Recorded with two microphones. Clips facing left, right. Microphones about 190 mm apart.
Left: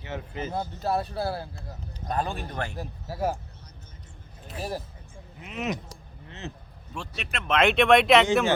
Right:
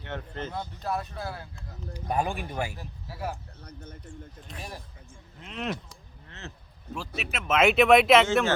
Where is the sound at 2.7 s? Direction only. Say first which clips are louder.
Left 7 dB; 40° left (ahead or behind).